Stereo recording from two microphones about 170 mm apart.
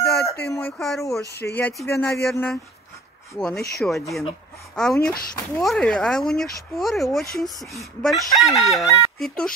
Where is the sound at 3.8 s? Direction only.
5° left (ahead or behind).